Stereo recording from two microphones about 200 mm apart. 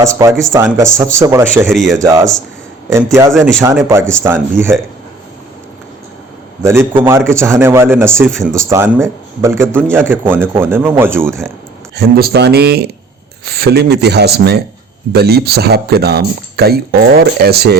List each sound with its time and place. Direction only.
0.0 s a man's voice: 15° right (ahead or behind)
1.6 s speech: centre (ahead or behind)
2.0 s a man's voice: 15° right (ahead or behind)
3.3 s speech: centre (ahead or behind)
4.1 s a man's voice: 10° right (ahead or behind)
6.6 s a man's voice: 15° right (ahead or behind)
11.9 s speech: 50° right (ahead or behind)